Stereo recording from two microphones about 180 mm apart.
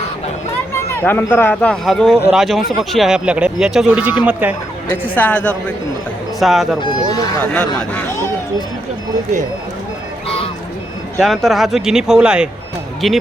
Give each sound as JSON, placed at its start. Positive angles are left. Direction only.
{"t": 0.7, "sound": "speech", "side_deg": 15}
{"t": 5.1, "sound": "speech", "side_deg": 10}
{"t": 6.7, "sound": "speech", "side_deg": 25}
{"t": 7.4, "sound": "speech", "side_deg": 5}
{"t": 11.2, "sound": "speech", "side_deg": 0}